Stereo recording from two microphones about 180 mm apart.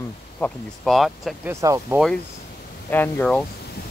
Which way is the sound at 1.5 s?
15° right (ahead or behind).